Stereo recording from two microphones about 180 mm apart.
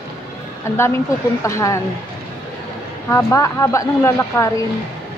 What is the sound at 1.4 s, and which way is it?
Speech, 15° left (ahead or behind).